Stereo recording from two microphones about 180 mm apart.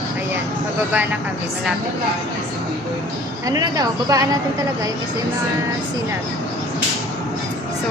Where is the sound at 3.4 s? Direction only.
20° right (ahead or behind).